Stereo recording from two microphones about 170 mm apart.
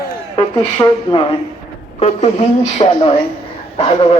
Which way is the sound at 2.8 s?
35° left (ahead or behind).